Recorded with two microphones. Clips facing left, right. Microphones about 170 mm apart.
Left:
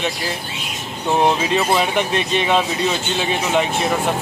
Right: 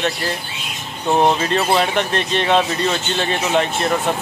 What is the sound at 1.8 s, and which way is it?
Speech, 10° left (ahead or behind).